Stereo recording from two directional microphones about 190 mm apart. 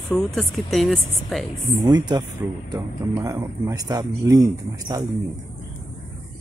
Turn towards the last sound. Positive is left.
turn(degrees=-20)  # may be behind; listen again after turning